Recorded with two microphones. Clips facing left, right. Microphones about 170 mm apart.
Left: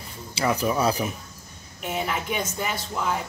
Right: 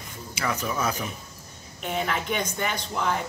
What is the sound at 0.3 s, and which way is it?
Speech, 30° left (ahead or behind).